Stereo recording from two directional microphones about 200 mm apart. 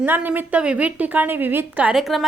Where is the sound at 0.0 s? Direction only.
10° right (ahead or behind).